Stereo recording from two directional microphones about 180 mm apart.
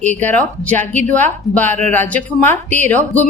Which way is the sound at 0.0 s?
10° left (ahead or behind).